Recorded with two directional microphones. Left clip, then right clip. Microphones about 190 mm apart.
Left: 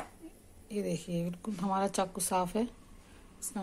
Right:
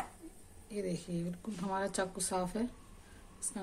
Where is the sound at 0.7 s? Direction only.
15° left (ahead or behind).